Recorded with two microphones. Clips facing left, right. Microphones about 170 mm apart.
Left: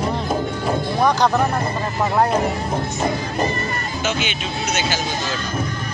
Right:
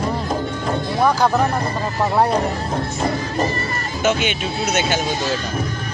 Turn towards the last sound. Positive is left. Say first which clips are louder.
# right 3 dB
turn(degrees=-55)  # may be behind; listen again after turning